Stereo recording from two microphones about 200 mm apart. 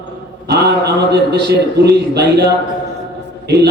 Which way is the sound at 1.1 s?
55° right (ahead or behind).